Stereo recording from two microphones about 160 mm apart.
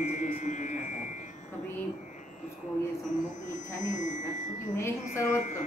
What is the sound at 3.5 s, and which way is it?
Speech, 50° left (ahead or behind).